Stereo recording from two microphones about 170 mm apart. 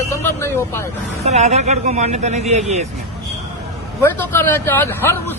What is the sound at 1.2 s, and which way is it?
Speech, 40° right (ahead or behind).